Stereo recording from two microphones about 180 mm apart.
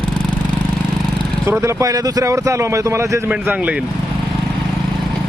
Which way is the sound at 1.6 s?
15° right (ahead or behind).